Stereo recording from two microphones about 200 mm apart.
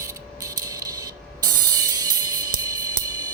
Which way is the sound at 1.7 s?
20° right (ahead or behind).